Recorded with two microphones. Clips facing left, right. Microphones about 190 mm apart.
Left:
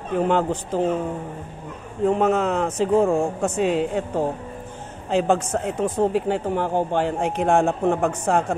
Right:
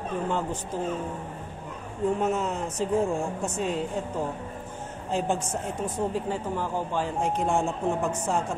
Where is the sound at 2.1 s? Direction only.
80° left.